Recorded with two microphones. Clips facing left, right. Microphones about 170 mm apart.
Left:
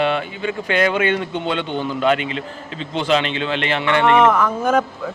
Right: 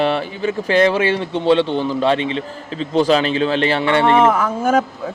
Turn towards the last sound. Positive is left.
turn(degrees=-10)  # may be behind; listen again after turning